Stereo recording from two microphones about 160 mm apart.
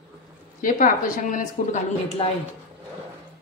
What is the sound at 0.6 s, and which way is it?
Speech, 55° left (ahead or behind).